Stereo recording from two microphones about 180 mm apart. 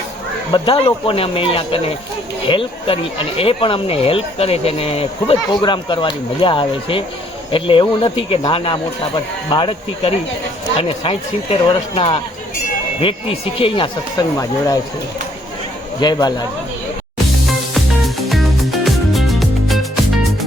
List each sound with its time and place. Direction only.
0.5 s speech: 30° left (ahead or behind)
16.0 s speech: 25° left (ahead or behind)
17.7 s music: centre (ahead or behind)